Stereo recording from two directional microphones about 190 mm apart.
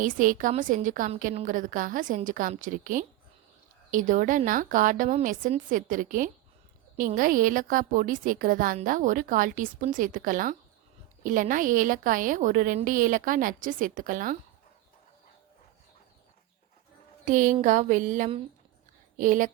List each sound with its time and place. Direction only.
0.0 s a woman's voice: 45° right (ahead or behind)
17.2 s a sound: 45° right (ahead or behind)
19.1 s speech: 45° right (ahead or behind)